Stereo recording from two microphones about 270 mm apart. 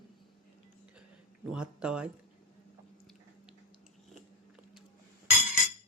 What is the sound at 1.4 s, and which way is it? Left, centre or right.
Speech, centre.